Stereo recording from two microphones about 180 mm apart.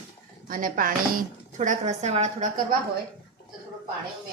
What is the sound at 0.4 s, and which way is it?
Speech, 50° right (ahead or behind).